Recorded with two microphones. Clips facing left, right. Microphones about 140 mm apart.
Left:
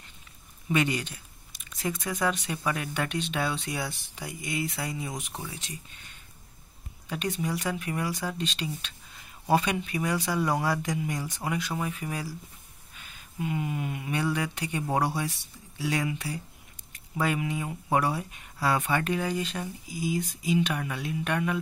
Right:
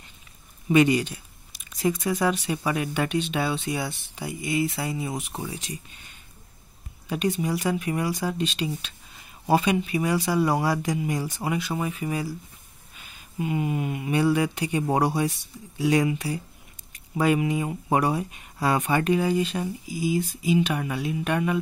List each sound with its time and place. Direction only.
0.7 s speech: 15° right (ahead or behind)
7.1 s speech: 10° right (ahead or behind)
13.4 s speech: 15° right (ahead or behind)